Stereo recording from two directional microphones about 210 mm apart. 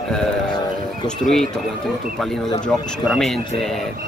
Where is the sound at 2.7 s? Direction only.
Centre (ahead or behind).